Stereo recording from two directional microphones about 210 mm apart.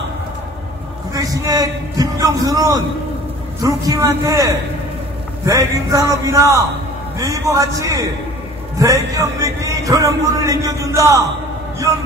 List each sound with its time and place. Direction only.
1.1 s speech: 15° right (ahead or behind)